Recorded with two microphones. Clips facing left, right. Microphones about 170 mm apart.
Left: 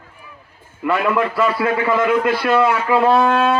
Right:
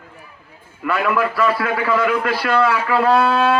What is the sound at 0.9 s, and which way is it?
A man's voice, 25° left (ahead or behind).